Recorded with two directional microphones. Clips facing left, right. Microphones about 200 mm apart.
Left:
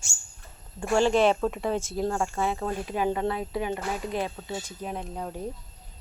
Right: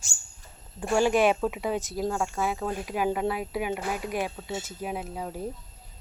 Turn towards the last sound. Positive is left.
turn(degrees=-5)  # may be behind; listen again after turning